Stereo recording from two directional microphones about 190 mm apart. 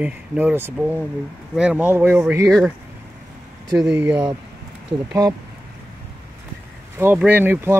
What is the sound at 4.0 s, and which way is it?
Speech, 10° right (ahead or behind).